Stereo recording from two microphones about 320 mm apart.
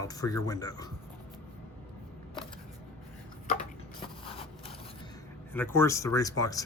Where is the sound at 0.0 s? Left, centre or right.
Centre.